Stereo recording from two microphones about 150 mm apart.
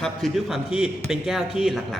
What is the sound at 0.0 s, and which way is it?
A man's voice, centre (ahead or behind).